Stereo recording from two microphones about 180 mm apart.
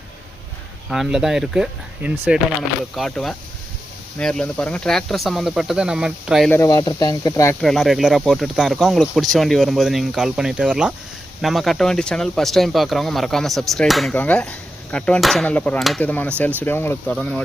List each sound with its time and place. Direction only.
0.9 s speech: 5° right (ahead or behind)
6.5 s speech: 15° left (ahead or behind)
7.6 s speech: centre (ahead or behind)